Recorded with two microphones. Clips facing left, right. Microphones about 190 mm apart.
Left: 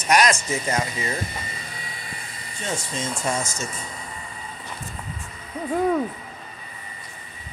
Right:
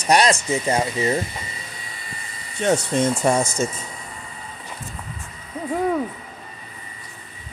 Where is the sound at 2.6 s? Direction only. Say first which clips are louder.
Right 10 dB; 65° right (ahead or behind).